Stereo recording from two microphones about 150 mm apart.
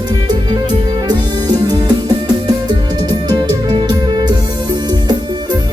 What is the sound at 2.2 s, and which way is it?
Music, 30° right (ahead or behind).